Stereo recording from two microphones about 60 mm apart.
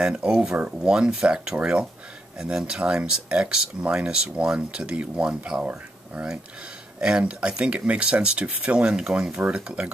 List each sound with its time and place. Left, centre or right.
0.0 s speech: centre